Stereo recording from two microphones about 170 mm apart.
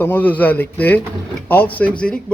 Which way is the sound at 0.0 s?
10° left (ahead or behind).